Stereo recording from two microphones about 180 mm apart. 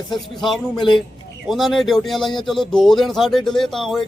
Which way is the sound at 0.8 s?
25° left (ahead or behind).